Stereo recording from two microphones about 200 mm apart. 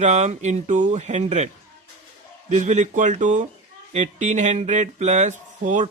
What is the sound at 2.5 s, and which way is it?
Speech, 35° right (ahead or behind).